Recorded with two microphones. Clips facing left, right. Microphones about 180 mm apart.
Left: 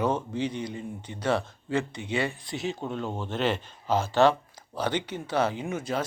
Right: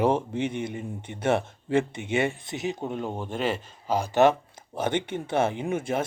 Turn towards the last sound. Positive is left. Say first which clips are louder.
# right 3 dB
turn(degrees=-25)  # may be behind; listen again after turning